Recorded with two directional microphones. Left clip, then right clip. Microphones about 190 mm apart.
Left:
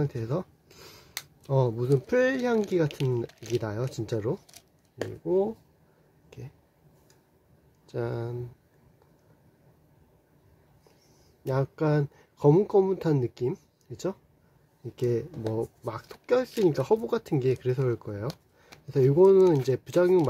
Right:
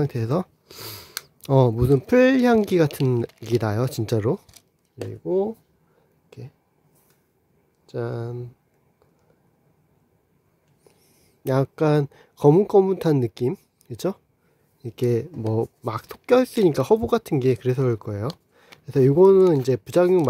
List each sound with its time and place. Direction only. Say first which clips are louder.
0.0 s speech: right 6 dB; 40° right (ahead or behind)
5.2 s speech: right 3 dB; 30° right (ahead or behind)
7.8 s speech: right 3 dB; 25° right (ahead or behind)
11.4 s speech: right 7 dB; 40° right (ahead or behind)